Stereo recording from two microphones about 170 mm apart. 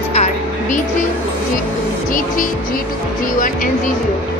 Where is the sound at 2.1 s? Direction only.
55° left (ahead or behind).